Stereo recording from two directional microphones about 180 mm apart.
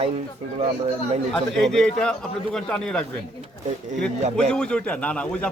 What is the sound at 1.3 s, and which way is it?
A man's voice, centre (ahead or behind).